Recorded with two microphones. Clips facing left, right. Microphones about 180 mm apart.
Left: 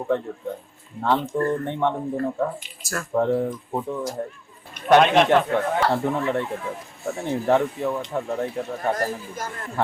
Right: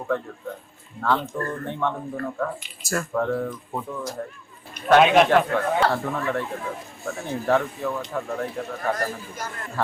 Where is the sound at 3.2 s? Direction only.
20° left (ahead or behind).